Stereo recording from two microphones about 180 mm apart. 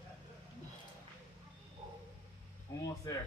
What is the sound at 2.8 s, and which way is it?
Speech, 20° left (ahead or behind).